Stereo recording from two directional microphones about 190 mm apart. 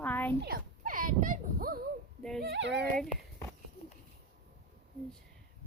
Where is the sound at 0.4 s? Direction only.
50° right (ahead or behind).